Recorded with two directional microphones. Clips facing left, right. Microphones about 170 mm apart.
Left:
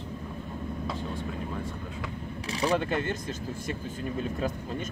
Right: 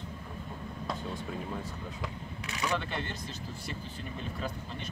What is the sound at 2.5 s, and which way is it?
Speech, 30° left (ahead or behind).